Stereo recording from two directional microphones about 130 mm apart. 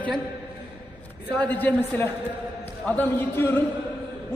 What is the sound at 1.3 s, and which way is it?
A man's voice, 15° left (ahead or behind).